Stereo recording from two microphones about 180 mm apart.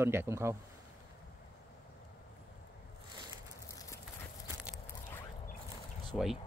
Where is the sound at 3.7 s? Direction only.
15° left (ahead or behind).